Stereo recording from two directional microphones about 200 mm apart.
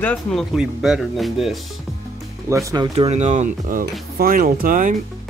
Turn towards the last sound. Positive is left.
turn(degrees=-40)  # may be behind; listen again after turning